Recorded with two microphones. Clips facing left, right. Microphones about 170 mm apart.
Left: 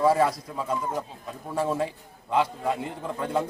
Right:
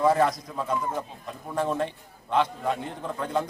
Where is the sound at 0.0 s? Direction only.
5° left (ahead or behind).